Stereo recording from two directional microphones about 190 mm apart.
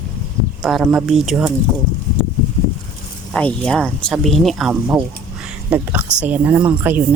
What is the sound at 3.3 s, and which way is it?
Speech, 5° left (ahead or behind).